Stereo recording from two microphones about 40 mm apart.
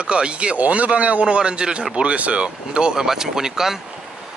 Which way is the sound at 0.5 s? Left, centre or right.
Right.